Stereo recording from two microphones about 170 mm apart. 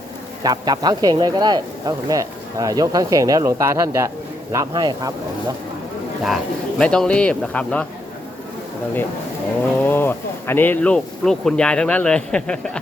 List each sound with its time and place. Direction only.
0.4 s speech: 25° right (ahead or behind)
6.2 s speech: centre (ahead or behind)
9.8 s speech: 10° left (ahead or behind)